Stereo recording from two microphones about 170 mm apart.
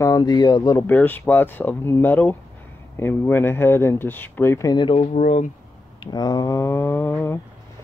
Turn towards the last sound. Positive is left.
turn(degrees=15)  # may be behind; listen again after turning